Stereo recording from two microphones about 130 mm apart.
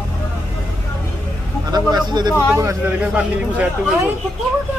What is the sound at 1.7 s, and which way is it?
Speech, 30° right (ahead or behind).